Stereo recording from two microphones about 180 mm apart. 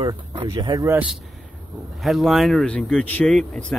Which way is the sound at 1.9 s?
Centre (ahead or behind).